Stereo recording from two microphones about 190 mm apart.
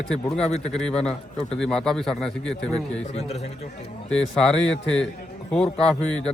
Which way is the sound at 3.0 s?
35° left (ahead or behind).